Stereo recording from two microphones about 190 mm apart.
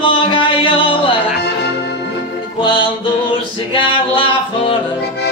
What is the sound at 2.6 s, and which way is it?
Music, 25° left (ahead or behind).